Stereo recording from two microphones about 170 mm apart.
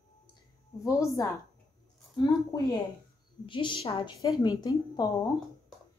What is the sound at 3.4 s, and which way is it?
Speech, 30° left (ahead or behind).